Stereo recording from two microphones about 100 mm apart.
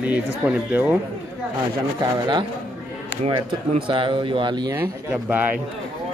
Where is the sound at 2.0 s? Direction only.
50° right (ahead or behind).